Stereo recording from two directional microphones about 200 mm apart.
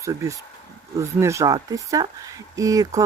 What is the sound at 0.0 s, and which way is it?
Speech, 15° right (ahead or behind).